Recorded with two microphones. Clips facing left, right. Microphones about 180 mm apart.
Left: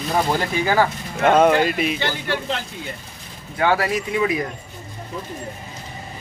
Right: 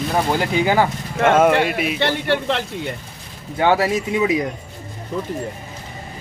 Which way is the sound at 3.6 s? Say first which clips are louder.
Right 3 dB; 25° right (ahead or behind).